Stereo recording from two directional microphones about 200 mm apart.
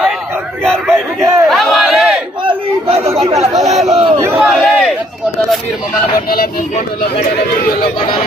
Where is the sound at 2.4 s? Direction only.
30° right (ahead or behind).